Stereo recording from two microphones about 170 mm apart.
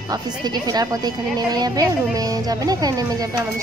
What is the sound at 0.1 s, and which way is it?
A child's voice, 25° right (ahead or behind).